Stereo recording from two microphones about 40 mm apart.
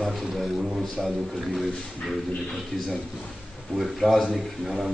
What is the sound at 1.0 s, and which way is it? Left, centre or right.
Speech, centre.